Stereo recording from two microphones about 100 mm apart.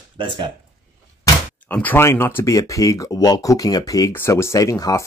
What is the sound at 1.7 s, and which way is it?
Speech, 20° left (ahead or behind).